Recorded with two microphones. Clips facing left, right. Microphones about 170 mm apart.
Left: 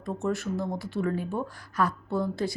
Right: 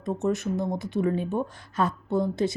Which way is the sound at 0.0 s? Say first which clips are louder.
Right 3 dB; 20° right (ahead or behind).